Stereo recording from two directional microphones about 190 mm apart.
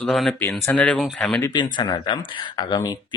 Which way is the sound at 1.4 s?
25° left (ahead or behind).